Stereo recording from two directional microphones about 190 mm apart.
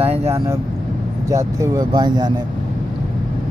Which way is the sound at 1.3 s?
20° right (ahead or behind).